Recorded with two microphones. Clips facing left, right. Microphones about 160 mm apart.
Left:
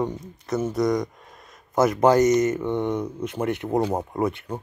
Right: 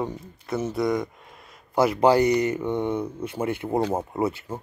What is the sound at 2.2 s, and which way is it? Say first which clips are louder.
Speech: left 2 dB; 45° left (ahead or behind).